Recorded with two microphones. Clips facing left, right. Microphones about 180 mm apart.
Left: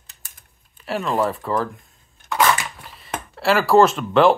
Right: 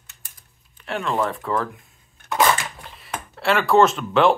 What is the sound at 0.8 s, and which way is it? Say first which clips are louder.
Speech: left 2 dB; 5° left (ahead or behind).